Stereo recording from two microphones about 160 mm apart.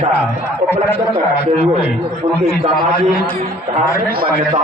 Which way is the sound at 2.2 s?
50° right (ahead or behind).